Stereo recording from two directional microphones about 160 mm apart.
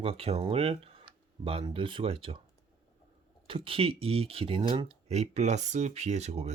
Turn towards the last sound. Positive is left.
turn(degrees=-45)  # may be behind; listen again after turning